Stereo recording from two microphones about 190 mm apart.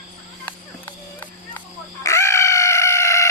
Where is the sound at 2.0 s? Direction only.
15° left (ahead or behind).